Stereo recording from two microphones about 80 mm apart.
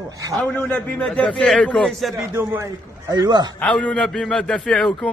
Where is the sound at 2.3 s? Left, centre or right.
Right.